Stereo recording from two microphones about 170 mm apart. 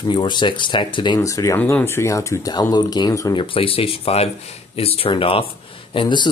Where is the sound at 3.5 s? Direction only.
35° left (ahead or behind).